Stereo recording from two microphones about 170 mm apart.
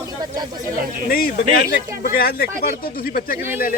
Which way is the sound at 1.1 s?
60° left (ahead or behind).